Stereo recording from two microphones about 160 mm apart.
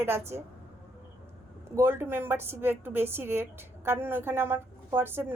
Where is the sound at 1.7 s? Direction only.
15° right (ahead or behind).